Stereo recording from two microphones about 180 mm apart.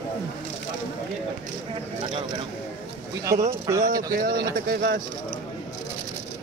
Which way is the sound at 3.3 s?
40° right (ahead or behind).